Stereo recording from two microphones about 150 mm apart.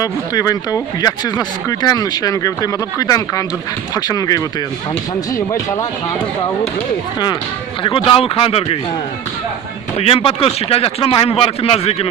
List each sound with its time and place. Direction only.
0.0 s speech: 25° left (ahead or behind)
7.9 s speech: 35° left (ahead or behind)
10.0 s speech: 40° left (ahead or behind)